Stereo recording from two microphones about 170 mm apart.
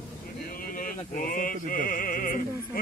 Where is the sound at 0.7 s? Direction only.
55° left (ahead or behind).